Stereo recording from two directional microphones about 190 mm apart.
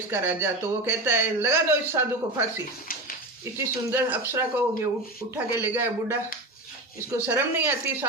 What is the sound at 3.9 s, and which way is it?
A man's voice, 10° right (ahead or behind).